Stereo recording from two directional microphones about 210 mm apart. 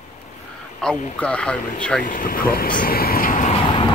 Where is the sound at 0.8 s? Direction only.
5° left (ahead or behind).